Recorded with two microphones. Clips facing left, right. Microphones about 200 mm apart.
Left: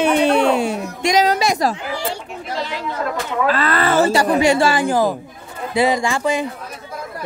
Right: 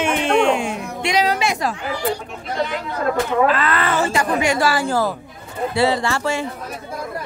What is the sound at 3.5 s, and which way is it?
Speech, 35° left (ahead or behind).